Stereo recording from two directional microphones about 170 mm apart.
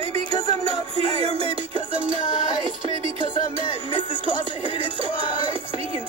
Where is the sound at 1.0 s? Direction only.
35° right (ahead or behind).